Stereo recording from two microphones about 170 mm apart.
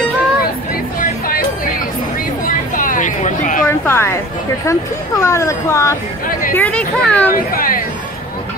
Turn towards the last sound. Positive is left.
turn(degrees=55)  # may be behind; listen again after turning